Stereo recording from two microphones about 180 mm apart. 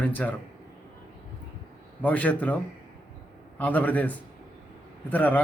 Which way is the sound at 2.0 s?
10° left (ahead or behind).